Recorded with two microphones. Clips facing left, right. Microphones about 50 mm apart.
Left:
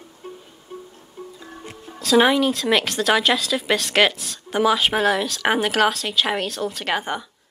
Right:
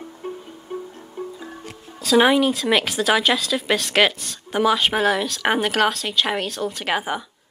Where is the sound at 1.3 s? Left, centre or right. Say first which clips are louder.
Right 3 dB; centre.